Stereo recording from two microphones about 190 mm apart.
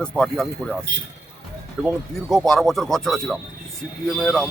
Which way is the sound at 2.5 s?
Centre (ahead or behind).